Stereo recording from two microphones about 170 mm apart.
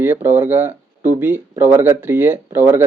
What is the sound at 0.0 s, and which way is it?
Speech, 10° right (ahead or behind).